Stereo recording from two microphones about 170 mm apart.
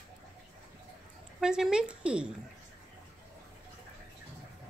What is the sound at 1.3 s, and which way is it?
Speech, 5° right (ahead or behind).